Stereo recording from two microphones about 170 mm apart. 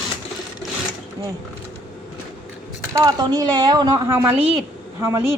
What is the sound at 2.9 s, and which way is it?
A woman's voice, 20° right (ahead or behind).